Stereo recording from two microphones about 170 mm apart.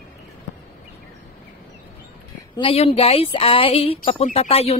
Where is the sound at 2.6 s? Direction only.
30° left (ahead or behind).